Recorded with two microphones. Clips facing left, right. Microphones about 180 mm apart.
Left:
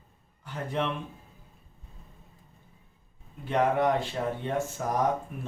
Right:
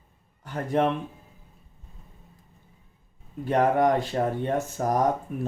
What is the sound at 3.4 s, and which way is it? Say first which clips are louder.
Speech: right 4 dB; 45° right (ahead or behind).